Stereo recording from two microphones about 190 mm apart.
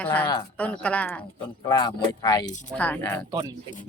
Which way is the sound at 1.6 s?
15° left (ahead or behind).